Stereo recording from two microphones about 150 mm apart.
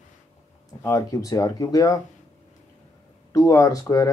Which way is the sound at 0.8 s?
20° left (ahead or behind).